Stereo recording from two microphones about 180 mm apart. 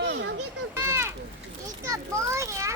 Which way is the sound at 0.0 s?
80° right.